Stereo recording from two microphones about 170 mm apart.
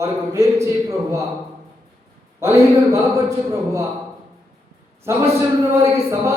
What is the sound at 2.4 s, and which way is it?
Speech, 15° right (ahead or behind).